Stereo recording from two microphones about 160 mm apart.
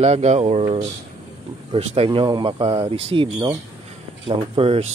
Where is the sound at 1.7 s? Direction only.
40° right (ahead or behind).